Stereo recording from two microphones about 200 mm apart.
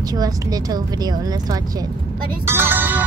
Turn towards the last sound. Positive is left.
turn(degrees=-10)  # may be behind; listen again after turning